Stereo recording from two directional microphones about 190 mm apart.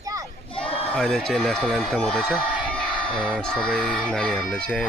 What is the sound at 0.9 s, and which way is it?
Speech, centre (ahead or behind).